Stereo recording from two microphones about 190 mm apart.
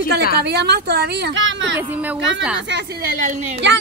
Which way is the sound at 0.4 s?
60° right (ahead or behind).